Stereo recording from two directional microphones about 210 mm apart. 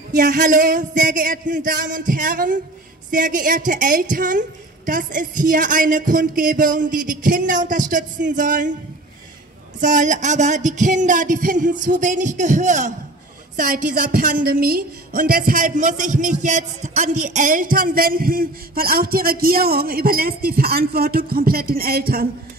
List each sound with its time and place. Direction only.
0.1 s a woman's voice: 40° right (ahead or behind)
9.8 s a woman's voice: 35° right (ahead or behind)